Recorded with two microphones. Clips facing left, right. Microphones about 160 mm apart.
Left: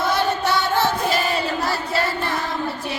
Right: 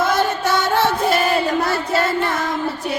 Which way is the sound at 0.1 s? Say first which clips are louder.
Right 2 dB; 45° right (ahead or behind).